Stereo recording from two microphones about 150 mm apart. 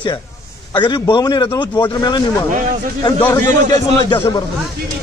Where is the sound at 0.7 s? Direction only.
30° left (ahead or behind).